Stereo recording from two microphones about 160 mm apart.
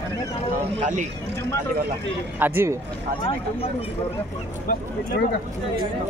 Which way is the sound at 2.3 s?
15° right (ahead or behind).